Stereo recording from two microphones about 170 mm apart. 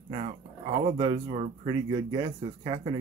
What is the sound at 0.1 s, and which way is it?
Speech, 35° right (ahead or behind).